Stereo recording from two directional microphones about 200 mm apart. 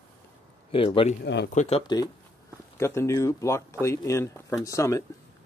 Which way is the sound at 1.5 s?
35° left (ahead or behind).